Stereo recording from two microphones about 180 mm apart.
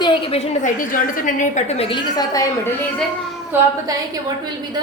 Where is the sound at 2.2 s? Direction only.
20° left (ahead or behind).